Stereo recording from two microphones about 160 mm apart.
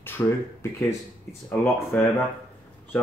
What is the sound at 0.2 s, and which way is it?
Speech, 15° left (ahead or behind).